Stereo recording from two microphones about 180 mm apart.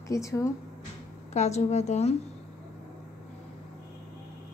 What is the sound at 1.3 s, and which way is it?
Speech, 40° left (ahead or behind).